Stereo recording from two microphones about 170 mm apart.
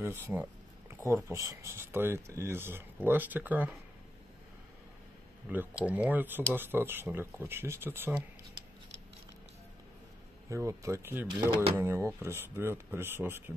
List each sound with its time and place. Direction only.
0.0 s speech: 10° right (ahead or behind)
5.5 s speech: 10° right (ahead or behind)
10.5 s speech: 15° right (ahead or behind)